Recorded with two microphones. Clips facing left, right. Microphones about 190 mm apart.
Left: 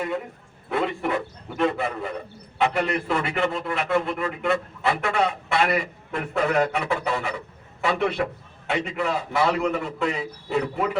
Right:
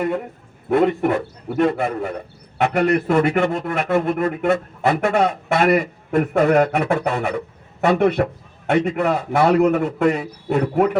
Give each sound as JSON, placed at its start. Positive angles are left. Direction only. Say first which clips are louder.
{"t": 0.7, "sound": "a man's voice", "louder": "right 8 dB", "side_deg": -50}